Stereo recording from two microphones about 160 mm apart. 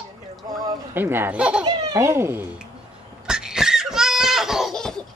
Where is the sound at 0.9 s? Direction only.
15° right (ahead or behind).